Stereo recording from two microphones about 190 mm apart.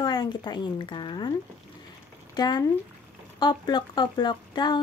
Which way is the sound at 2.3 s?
20° left (ahead or behind).